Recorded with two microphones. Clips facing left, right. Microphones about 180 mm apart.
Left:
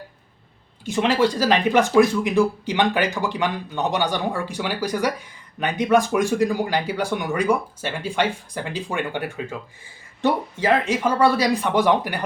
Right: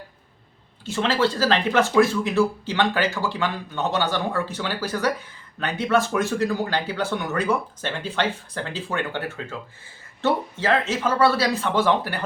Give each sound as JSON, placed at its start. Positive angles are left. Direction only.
{"t": 0.9, "sound": "speech", "side_deg": 15}